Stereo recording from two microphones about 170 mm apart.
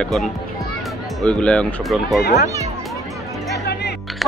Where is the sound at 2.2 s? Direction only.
70° left (ahead or behind).